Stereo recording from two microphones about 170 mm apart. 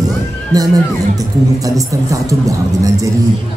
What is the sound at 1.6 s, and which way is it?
Speech, 20° right (ahead or behind).